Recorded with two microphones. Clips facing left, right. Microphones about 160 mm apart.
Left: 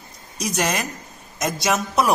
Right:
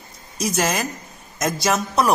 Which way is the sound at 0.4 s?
Centre (ahead or behind).